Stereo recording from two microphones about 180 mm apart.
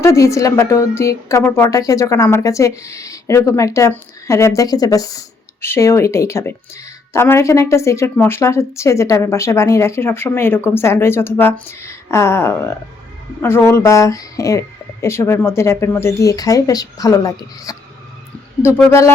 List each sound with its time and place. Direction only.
0.0 s speech: 15° left (ahead or behind)
18.9 s speech: 15° left (ahead or behind)